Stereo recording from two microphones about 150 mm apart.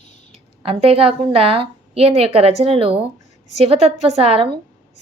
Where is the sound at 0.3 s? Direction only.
40° right (ahead or behind).